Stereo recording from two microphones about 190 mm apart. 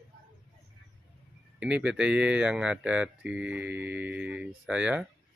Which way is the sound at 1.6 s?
5° right (ahead or behind).